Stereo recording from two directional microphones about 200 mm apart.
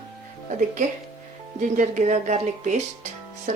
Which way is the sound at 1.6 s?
40° right (ahead or behind).